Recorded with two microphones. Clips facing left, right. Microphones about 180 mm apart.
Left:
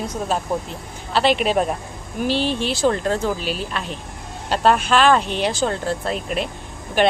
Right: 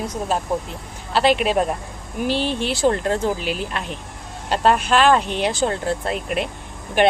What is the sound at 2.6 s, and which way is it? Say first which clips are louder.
Speech: even; 15° right (ahead or behind).